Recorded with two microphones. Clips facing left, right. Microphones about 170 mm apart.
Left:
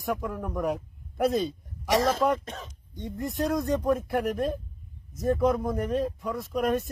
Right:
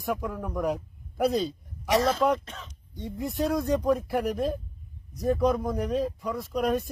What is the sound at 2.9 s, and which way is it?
Speech, centre (ahead or behind).